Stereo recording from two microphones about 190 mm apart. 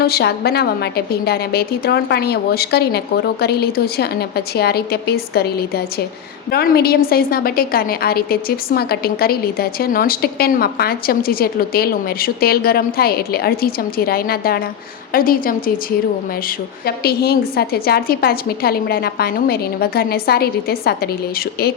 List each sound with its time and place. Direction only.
0.0 s a woman's voice: 60° left (ahead or behind)
16.8 s a woman's voice: 55° left (ahead or behind)